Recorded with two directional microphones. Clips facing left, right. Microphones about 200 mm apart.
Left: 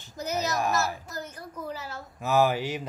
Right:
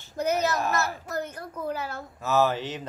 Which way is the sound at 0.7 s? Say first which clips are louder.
Right 1 dB; 60° right (ahead or behind).